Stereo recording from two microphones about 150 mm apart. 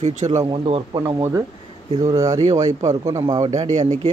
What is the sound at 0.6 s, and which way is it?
Speech, 35° right (ahead or behind).